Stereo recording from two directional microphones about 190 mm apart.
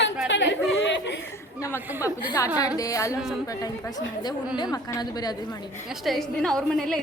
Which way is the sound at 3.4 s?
20° left (ahead or behind).